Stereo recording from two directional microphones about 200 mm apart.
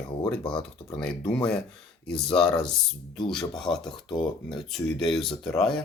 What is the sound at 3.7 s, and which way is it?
Speech, 25° left (ahead or behind).